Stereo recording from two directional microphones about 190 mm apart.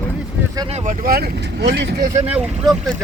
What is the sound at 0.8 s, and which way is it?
Speech, 50° right (ahead or behind).